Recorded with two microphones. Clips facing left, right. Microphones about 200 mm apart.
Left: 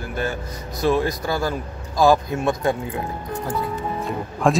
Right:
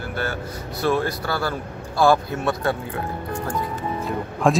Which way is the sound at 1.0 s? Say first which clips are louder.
Left 2 dB; 15° left (ahead or behind).